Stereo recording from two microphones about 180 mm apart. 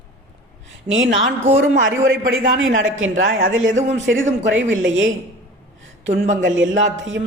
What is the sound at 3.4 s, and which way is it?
A man's voice, 90° right.